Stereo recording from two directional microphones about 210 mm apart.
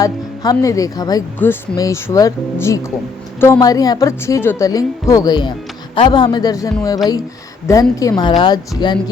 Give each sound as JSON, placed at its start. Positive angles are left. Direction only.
{"t": 0.0, "sound": "a woman's voice", "side_deg": 15}
{"t": 7.7, "sound": "a woman's voice", "side_deg": 15}